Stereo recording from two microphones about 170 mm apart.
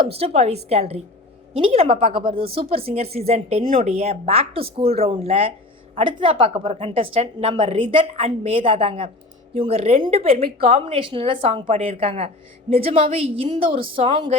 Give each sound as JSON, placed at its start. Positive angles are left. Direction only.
{"t": 0.1, "sound": "speech", "side_deg": -35}